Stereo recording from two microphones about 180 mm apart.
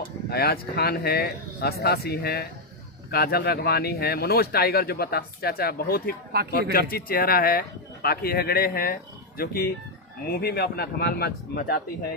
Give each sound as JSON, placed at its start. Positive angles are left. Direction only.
{"t": 0.3, "sound": "speech", "side_deg": 60}